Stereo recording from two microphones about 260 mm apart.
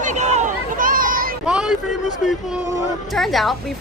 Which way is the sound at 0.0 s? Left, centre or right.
Right.